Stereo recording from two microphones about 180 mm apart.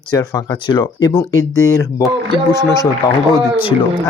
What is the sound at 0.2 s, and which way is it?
Speech, 20° left (ahead or behind).